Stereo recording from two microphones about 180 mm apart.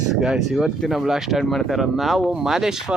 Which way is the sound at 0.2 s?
Centre (ahead or behind).